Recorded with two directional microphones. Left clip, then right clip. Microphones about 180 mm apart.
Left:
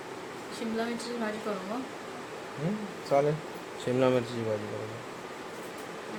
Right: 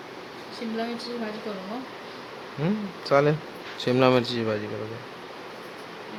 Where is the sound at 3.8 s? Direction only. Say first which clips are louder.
Right 6 dB; 30° right (ahead or behind).